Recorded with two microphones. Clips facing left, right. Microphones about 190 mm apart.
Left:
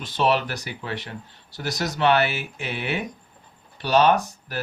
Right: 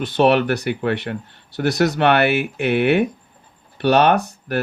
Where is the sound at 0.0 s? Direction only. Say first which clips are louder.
Right 7 dB; 60° right (ahead or behind).